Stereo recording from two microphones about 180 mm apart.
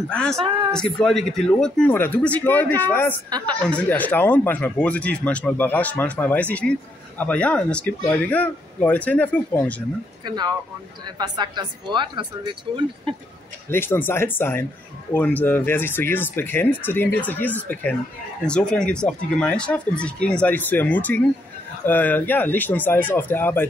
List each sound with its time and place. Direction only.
0.1 s speech: 5° left (ahead or behind)
3.3 s speech: 25° right (ahead or behind)
3.6 s speech: 10° left (ahead or behind)
10.2 s speech: 25° right (ahead or behind)
13.7 s speech: 10° left (ahead or behind)